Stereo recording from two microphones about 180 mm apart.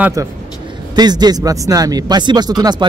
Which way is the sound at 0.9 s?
20° right (ahead or behind).